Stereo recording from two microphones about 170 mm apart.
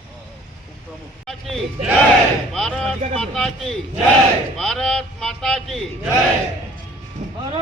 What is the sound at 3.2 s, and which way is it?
A man's voice, centre (ahead or behind).